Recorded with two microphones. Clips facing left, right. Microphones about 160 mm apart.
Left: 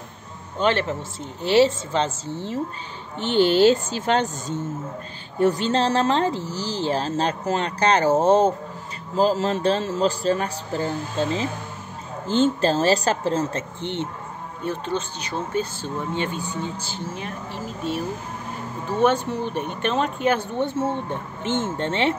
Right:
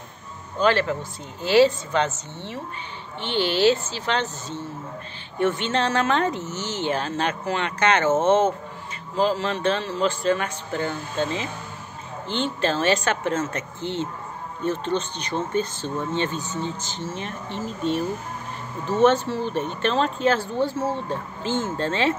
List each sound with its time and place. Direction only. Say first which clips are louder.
0.6 s a woman's voice: right 1 dB; 25° left (ahead or behind)
14.6 s speech: right 2 dB; 10° left (ahead or behind)